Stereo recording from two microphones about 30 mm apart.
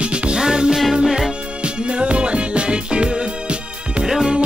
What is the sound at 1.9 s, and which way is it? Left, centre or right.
Music, right.